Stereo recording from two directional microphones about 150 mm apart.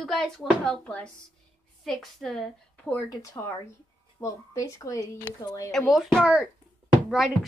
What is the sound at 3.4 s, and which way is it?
Speech, 15° left (ahead or behind).